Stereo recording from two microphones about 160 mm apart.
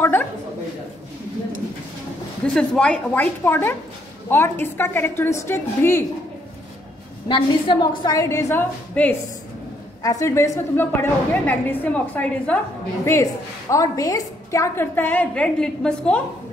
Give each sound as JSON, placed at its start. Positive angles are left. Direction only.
{"t": 2.4, "sound": "a woman's voice", "side_deg": 5}
{"t": 7.2, "sound": "a woman's voice", "side_deg": 30}
{"t": 9.0, "sound": "a woman's voice", "side_deg": 10}
{"t": 10.0, "sound": "a woman's voice", "side_deg": 20}